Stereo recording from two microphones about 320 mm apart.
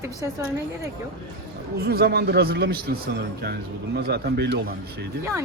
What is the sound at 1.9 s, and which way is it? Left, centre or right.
A man's voice, right.